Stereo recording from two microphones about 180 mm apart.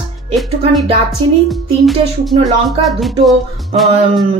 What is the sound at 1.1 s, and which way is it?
Speech, centre (ahead or behind).